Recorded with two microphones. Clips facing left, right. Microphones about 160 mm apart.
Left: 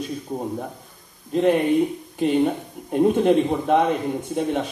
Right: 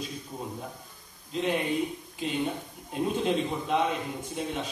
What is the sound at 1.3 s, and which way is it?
Speech, 55° left (ahead or behind).